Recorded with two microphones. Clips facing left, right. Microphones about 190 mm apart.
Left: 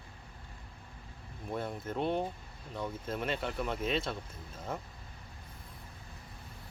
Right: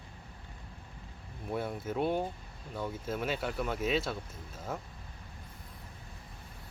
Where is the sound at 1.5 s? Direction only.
5° right (ahead or behind).